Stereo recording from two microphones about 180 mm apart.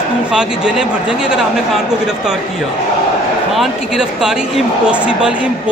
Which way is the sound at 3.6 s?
5° right (ahead or behind).